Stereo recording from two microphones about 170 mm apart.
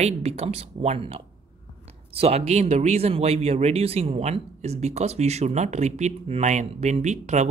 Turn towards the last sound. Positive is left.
turn(degrees=-45)  # may be behind; listen again after turning